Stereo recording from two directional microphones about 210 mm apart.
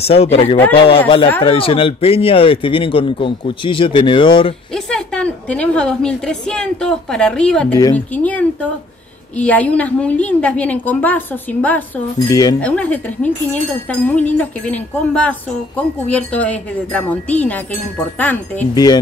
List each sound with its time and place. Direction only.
0.0 s speech: 30° left (ahead or behind)
4.7 s a woman's voice: 5° left (ahead or behind)
12.5 s speech: 5° left (ahead or behind)